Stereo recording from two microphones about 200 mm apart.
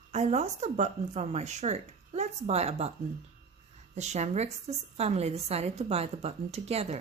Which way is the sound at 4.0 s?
35° right (ahead or behind).